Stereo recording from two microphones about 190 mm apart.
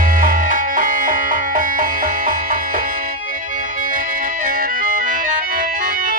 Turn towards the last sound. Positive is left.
turn(degrees=-45)  # may be behind; listen again after turning